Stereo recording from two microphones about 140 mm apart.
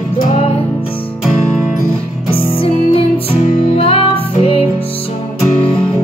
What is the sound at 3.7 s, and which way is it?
Music, 40° left (ahead or behind).